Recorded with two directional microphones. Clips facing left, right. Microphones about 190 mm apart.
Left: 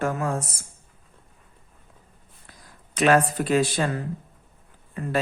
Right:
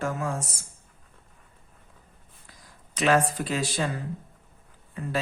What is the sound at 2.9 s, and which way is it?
Speech, 55° left (ahead or behind).